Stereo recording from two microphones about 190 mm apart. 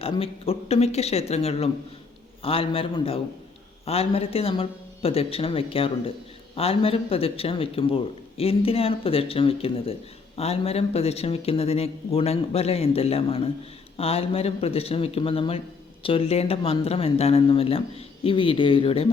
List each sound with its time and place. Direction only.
0.0 s a man's voice: 30° left (ahead or behind)